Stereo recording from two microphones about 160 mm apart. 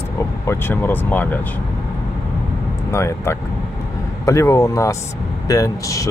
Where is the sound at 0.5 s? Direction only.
15° left (ahead or behind).